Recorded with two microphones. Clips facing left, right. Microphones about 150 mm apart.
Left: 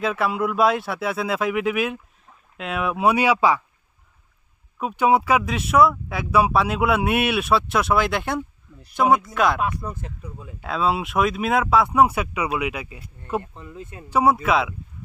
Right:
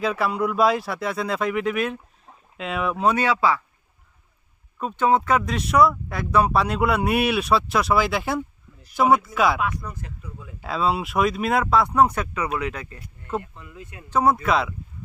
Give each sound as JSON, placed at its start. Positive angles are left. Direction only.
{"t": 0.0, "sound": "speech", "side_deg": 0}
{"t": 4.8, "sound": "speech", "side_deg": 10}
{"t": 9.6, "sound": "speech", "side_deg": 30}
{"t": 10.6, "sound": "speech", "side_deg": 0}
{"t": 13.4, "sound": "speech", "side_deg": 30}
{"t": 14.1, "sound": "speech", "side_deg": 10}